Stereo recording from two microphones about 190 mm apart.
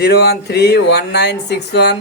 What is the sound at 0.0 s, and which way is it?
Speech, 55° left (ahead or behind).